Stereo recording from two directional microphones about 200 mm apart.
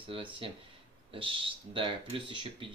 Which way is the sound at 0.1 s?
25° right (ahead or behind).